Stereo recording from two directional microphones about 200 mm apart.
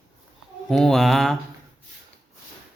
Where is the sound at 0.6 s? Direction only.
Centre (ahead or behind).